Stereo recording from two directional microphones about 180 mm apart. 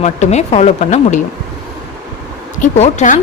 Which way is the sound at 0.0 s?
40° left (ahead or behind).